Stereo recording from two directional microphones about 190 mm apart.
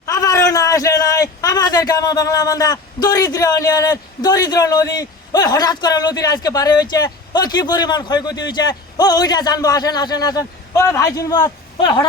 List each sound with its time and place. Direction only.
0.0 s a man's voice: 20° left (ahead or behind)